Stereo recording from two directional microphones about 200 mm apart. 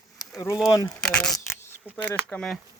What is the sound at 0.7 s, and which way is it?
Speech, 20° left (ahead or behind).